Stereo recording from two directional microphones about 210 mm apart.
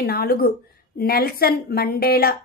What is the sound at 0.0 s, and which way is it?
A woman's voice, 45° left (ahead or behind).